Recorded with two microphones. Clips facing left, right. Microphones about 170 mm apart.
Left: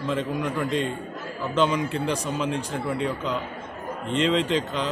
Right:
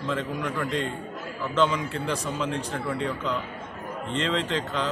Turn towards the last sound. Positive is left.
turn(degrees=15)  # may be behind; listen again after turning